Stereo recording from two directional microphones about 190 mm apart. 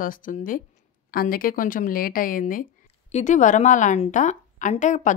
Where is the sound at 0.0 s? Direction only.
45° left (ahead or behind).